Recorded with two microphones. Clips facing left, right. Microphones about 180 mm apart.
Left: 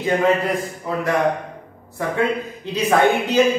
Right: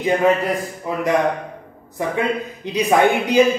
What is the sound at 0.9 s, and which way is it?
A man's voice, 15° right (ahead or behind).